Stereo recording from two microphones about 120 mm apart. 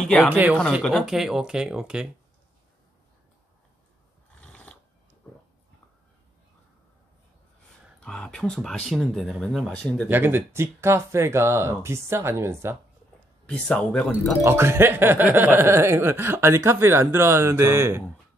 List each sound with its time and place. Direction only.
0.3 s speech: 15° right (ahead or behind)
0.8 s speech: centre (ahead or behind)
4.4 s a sound: 10° left (ahead or behind)
8.0 s speech: 5° left (ahead or behind)
10.0 s speech: 15° right (ahead or behind)
13.5 s speech: 10° left (ahead or behind)
14.4 s speech: 20° right (ahead or behind)